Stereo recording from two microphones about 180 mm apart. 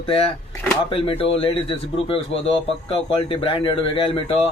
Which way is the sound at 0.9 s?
30° left (ahead or behind).